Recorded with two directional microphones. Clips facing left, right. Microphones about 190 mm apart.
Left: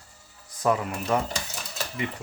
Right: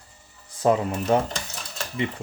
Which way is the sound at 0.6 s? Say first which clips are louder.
Right 4 dB; 25° right (ahead or behind).